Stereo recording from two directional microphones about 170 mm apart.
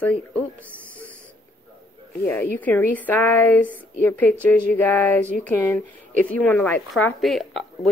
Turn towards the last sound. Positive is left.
turn(degrees=0)  # may be behind; listen again after turning